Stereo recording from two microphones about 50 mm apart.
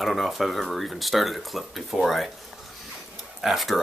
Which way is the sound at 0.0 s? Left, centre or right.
Centre.